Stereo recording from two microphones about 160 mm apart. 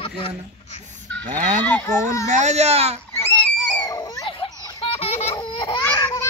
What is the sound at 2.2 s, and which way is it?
Speech, 45° right (ahead or behind).